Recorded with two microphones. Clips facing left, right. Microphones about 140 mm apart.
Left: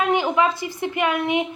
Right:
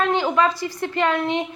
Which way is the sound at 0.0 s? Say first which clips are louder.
Even; 15° left (ahead or behind).